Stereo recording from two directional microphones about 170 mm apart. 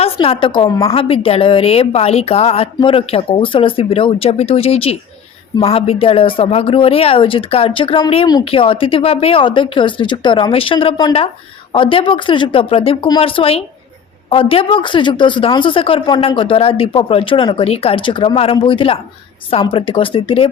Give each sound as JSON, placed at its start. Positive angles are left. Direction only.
{"t": 0.0, "sound": "a woman's voice", "side_deg": 35}